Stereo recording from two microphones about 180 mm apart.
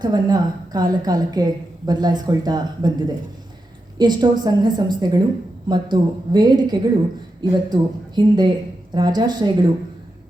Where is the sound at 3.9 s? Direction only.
25° right (ahead or behind).